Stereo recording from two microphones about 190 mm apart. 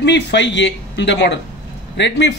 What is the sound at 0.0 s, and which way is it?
Speech, 65° left (ahead or behind).